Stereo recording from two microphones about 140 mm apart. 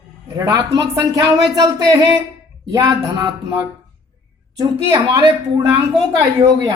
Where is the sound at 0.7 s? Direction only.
30° right (ahead or behind).